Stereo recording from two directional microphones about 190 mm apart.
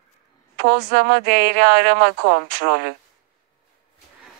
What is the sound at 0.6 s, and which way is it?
Speech, 55° right (ahead or behind).